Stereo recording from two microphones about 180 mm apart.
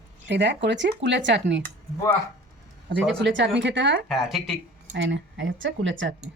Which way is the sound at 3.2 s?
90° right.